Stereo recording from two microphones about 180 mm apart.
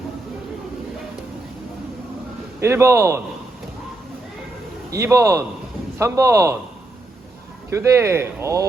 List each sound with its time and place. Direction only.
2.6 s speech: 15° right (ahead or behind)
4.9 s speech: 15° right (ahead or behind)
7.7 s speech: 15° right (ahead or behind)